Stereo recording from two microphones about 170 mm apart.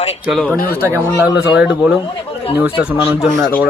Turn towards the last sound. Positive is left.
turn(degrees=-10)  # may be behind; listen again after turning